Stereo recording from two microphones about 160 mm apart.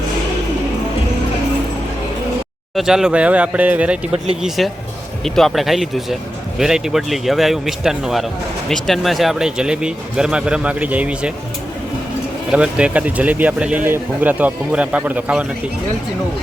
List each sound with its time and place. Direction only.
2.7 s speech: 5° right (ahead or behind)
12.5 s speech: 5° right (ahead or behind)